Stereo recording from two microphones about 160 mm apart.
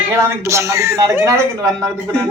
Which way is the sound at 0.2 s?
15° right (ahead or behind).